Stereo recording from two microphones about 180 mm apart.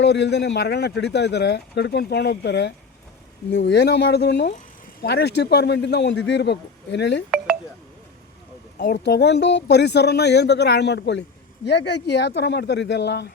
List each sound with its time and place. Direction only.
0.0 s speech: 70° left (ahead or behind)
8.8 s speech: 70° left (ahead or behind)